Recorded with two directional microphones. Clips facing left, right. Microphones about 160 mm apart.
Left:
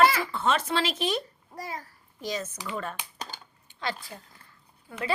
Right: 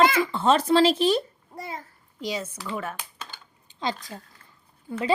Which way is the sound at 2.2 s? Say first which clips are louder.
Right 2 dB; 10° right (ahead or behind).